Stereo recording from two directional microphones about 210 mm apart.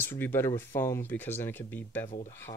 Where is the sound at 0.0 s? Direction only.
10° left (ahead or behind).